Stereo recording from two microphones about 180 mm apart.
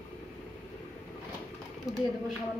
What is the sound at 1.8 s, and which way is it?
Speech, centre (ahead or behind).